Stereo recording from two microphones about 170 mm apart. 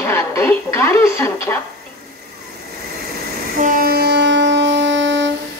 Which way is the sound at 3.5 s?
50° right (ahead or behind).